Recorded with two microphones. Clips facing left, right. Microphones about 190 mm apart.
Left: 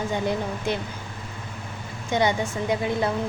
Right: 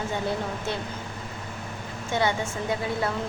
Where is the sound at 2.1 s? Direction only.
15° left (ahead or behind).